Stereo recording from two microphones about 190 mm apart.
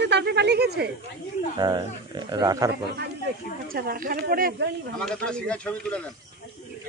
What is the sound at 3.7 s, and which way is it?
Speech, 50° right (ahead or behind).